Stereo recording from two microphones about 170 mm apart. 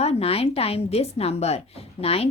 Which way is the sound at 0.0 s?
35° left (ahead or behind).